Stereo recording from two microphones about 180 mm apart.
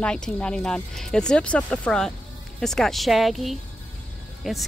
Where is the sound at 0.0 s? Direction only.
5° left (ahead or behind).